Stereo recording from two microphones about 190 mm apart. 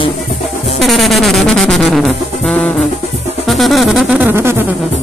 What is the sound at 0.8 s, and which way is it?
Music, centre (ahead or behind).